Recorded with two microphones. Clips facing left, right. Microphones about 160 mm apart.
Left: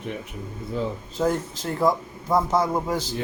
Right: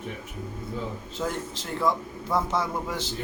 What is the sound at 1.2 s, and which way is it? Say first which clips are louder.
Speech: left 7 dB; 40° left (ahead or behind).